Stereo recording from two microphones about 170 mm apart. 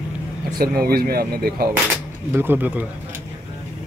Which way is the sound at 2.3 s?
15° right (ahead or behind).